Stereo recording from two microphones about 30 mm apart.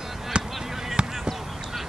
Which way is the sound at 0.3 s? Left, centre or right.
Right.